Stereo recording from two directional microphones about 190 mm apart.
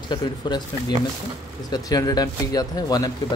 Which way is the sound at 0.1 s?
25° left (ahead or behind).